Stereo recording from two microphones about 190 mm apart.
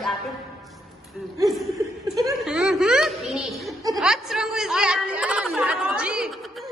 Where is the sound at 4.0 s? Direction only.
5° right (ahead or behind).